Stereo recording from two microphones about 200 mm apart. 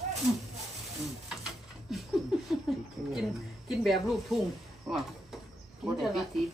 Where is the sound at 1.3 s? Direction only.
Centre (ahead or behind).